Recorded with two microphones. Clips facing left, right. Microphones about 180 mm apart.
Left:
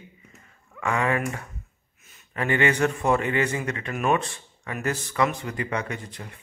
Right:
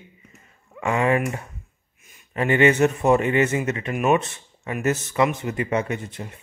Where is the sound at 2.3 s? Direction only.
20° right (ahead or behind).